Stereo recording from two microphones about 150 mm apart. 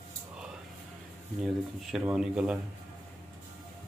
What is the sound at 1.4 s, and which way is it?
Speech, 5° right (ahead or behind).